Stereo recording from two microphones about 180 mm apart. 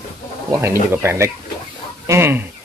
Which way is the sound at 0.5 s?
15° right (ahead or behind).